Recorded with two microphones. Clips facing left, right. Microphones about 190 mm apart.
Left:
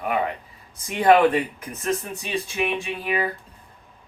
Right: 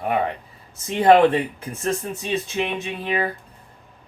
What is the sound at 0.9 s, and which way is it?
Speech, 25° right (ahead or behind).